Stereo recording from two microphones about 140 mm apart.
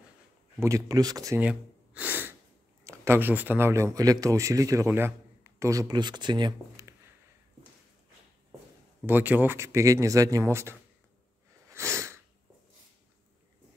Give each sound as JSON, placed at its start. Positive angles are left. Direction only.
{"t": 0.6, "sound": "speech", "side_deg": -20}
{"t": 1.4, "sound": "gasp", "side_deg": -10}
{"t": 2.8, "sound": "speech", "side_deg": -20}
{"t": 9.0, "sound": "speech", "side_deg": -15}
{"t": 11.7, "sound": "sneeze", "side_deg": -20}